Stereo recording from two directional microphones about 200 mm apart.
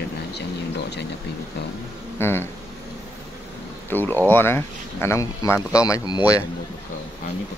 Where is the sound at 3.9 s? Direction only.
10° left (ahead or behind).